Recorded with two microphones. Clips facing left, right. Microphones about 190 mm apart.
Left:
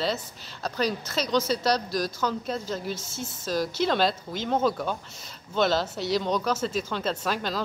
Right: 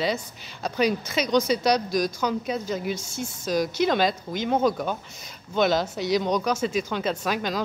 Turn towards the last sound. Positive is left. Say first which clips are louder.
# right 2 dB
turn(degrees=-10)  # may be behind; listen again after turning